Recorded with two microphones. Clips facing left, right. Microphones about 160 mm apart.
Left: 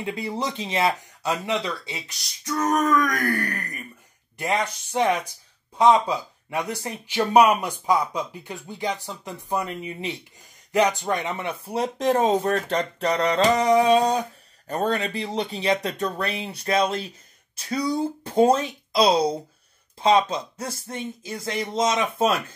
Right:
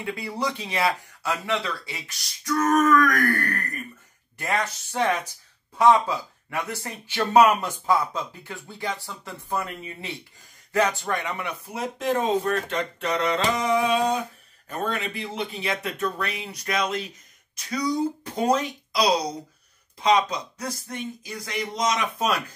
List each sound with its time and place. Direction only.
0.0 s speech: 20° left (ahead or behind)